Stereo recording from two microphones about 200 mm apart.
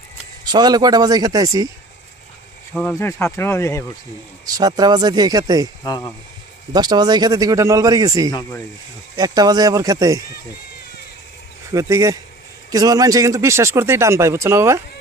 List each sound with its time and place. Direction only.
0.4 s speech: 20° right (ahead or behind)
2.9 s speech: 15° left (ahead or behind)
4.4 s speech: 20° right (ahead or behind)
5.8 s speech: 20° left (ahead or behind)
6.7 s speech: 20° right (ahead or behind)
8.3 s speech: 20° left (ahead or behind)
9.1 s speech: 20° right (ahead or behind)
11.7 s speech: 15° right (ahead or behind)